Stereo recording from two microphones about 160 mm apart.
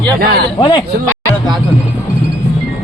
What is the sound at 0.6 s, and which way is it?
Speech, 30° left (ahead or behind).